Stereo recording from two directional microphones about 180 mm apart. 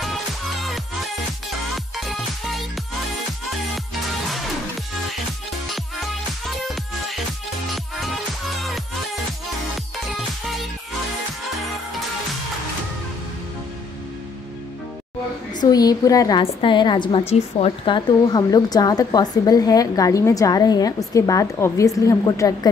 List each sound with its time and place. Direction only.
2.0 s music: centre (ahead or behind)
7.7 s music: centre (ahead or behind)
9.9 s music: centre (ahead or behind)
15.6 s a woman's voice: 20° left (ahead or behind)